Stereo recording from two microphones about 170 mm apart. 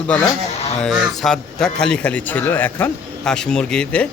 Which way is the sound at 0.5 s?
40° left (ahead or behind).